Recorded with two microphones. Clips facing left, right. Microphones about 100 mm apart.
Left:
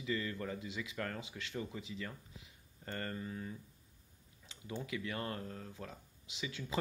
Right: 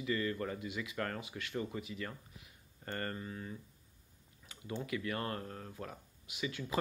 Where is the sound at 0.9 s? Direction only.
40° right (ahead or behind).